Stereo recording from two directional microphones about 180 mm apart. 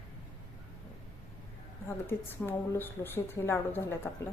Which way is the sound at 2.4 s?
10° left (ahead or behind).